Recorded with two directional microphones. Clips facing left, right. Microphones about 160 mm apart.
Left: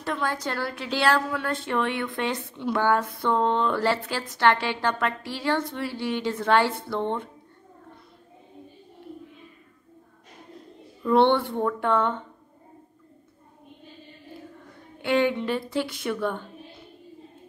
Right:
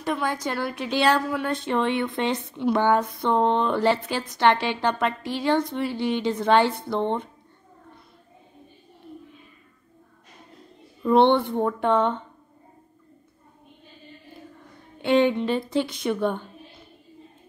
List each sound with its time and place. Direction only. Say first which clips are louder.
0.0 s a woman's voice: right 2 dB; 15° right (ahead or behind)
11.0 s a woman's voice: right 2 dB; 20° right (ahead or behind)
15.0 s a woman's voice: right 3 dB; 20° right (ahead or behind)